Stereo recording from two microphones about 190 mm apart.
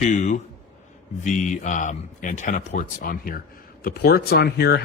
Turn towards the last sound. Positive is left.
turn(degrees=55)  # may be behind; listen again after turning